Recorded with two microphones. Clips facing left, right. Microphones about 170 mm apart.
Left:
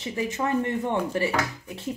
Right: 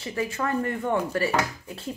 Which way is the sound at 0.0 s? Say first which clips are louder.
Left 1 dB; 20° left (ahead or behind).